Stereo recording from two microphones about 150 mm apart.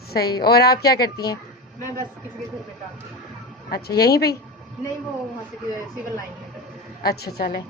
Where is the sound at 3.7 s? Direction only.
90° left.